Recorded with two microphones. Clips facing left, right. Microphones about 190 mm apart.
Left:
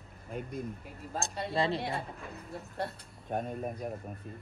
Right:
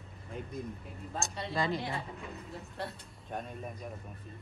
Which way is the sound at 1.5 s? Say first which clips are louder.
Left 2 dB; 30° left (ahead or behind).